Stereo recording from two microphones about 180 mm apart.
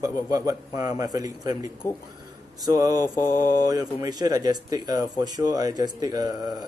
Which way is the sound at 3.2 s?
15° left (ahead or behind).